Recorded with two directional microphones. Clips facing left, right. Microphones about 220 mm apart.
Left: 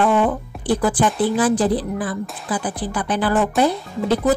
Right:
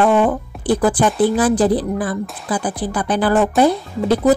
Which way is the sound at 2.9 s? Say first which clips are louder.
Right 3 dB; 40° right (ahead or behind).